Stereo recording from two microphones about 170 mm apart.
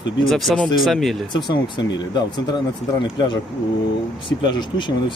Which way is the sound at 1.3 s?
25° left (ahead or behind).